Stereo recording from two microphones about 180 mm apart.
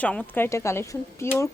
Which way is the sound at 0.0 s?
5° left (ahead or behind).